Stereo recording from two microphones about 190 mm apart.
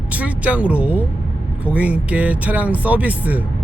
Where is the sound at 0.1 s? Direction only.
5° right (ahead or behind).